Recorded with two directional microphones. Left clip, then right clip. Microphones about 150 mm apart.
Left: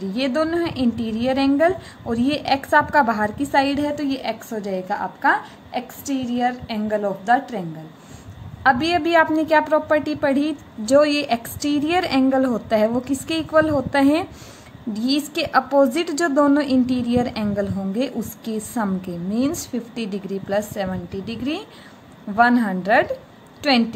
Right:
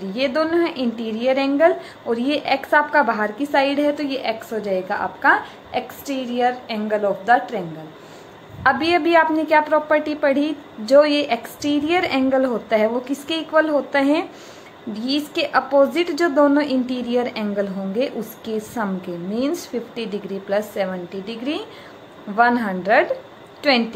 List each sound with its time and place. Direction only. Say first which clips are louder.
0.1 s a woman's voice: right 2 dB; 40° left (ahead or behind)
8.6 s a woman's voice: right 1 dB; 35° left (ahead or behind)